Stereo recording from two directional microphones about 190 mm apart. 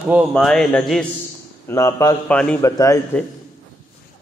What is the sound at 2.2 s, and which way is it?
Speech, 5° left (ahead or behind).